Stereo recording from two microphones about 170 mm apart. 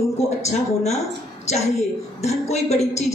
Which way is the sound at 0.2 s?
40° left (ahead or behind).